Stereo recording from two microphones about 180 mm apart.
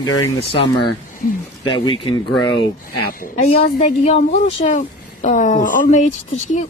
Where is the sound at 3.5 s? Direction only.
35° left (ahead or behind).